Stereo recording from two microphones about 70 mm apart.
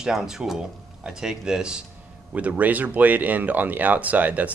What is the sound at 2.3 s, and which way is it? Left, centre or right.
Speech, right.